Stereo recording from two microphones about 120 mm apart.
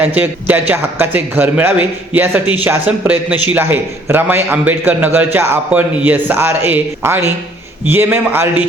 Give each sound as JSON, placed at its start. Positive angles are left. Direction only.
{"t": 0.0, "sound": "a man's voice", "side_deg": -15}